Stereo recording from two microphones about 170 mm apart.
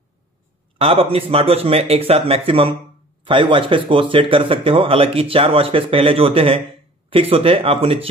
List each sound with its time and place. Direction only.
0.7 s speech: 35° right (ahead or behind)